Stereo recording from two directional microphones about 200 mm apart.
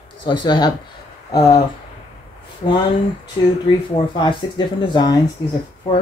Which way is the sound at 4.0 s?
30° left (ahead or behind).